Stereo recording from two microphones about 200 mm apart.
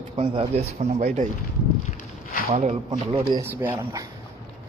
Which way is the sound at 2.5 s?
35° right (ahead or behind).